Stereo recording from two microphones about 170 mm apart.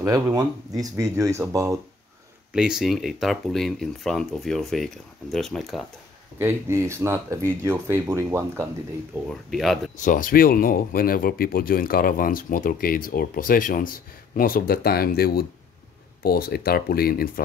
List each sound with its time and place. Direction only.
0.0 s speech: 20° right (ahead or behind)
2.5 s speech: 5° right (ahead or behind)
6.3 s speech: 15° right (ahead or behind)
9.3 s speech: centre (ahead or behind)
10.0 s speech: 55° left (ahead or behind)